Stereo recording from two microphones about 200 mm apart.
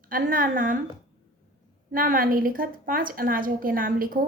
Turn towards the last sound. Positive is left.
turn(degrees=-45)  # may be behind; listen again after turning